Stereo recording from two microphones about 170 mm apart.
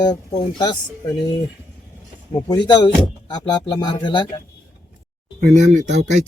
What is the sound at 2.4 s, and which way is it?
A man's voice, 25° left (ahead or behind).